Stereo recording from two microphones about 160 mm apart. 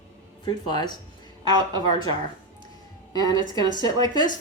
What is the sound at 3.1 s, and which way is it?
Speech, 25° left (ahead or behind).